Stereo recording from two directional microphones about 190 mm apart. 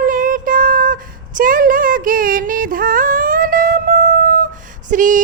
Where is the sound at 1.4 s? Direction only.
45° right (ahead or behind).